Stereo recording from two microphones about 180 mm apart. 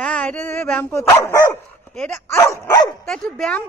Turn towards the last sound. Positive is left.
turn(degrees=5)  # may be behind; listen again after turning